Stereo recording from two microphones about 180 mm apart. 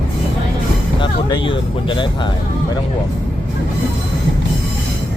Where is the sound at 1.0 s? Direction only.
25° left (ahead or behind).